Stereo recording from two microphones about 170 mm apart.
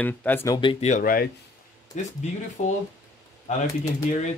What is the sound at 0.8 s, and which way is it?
Speech, 50° left (ahead or behind).